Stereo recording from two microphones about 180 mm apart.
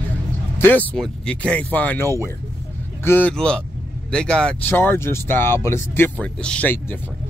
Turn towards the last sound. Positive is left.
turn(degrees=5)  # may be behind; listen again after turning